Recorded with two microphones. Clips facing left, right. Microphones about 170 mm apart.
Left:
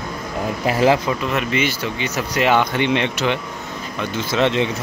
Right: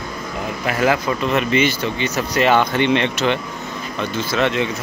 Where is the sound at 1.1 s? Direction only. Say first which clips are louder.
Right 2 dB; 5° left (ahead or behind).